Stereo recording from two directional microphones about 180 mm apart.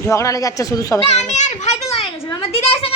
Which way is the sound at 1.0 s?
40° left (ahead or behind).